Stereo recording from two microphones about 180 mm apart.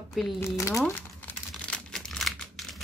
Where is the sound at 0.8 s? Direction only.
10° left (ahead or behind).